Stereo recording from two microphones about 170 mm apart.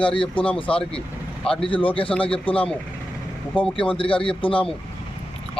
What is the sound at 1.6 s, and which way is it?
Speech, 30° left (ahead or behind).